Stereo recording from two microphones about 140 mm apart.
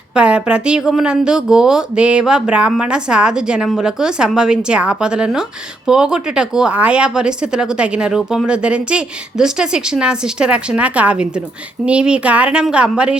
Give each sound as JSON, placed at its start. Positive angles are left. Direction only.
{"t": 0.1, "sound": "speech", "side_deg": -5}